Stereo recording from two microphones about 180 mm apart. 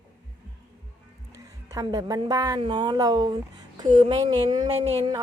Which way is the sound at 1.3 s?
20° right (ahead or behind).